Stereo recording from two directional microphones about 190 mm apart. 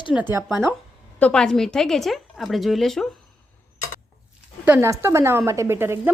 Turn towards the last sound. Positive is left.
turn(degrees=-10)  # may be behind; listen again after turning